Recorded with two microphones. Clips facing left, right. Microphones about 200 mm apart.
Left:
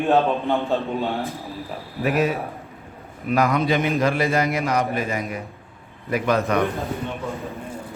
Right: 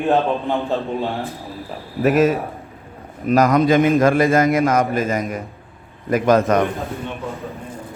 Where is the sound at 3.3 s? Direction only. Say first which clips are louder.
Right 6 dB; 45° right (ahead or behind).